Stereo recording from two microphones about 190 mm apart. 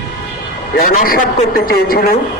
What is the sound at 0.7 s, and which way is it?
A man's voice, 50° left (ahead or behind).